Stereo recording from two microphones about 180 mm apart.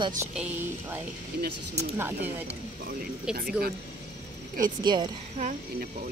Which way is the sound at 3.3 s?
60° right (ahead or behind).